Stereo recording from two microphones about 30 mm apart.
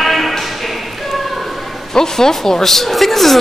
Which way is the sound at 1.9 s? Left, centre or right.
Centre.